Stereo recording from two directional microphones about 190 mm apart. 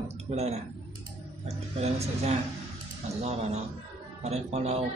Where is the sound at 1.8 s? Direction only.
35° right (ahead or behind).